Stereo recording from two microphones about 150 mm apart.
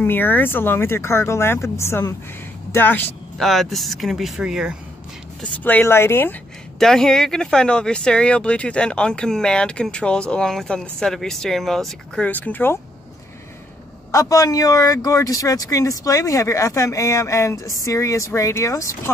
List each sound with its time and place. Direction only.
0.0 s speech: 15° left (ahead or behind)
3.3 s speech: centre (ahead or behind)
5.4 s speech: 10° left (ahead or behind)
6.8 s speech: 5° left (ahead or behind)
14.1 s speech: 20° left (ahead or behind)